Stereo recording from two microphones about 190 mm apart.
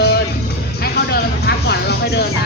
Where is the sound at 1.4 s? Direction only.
60° left (ahead or behind).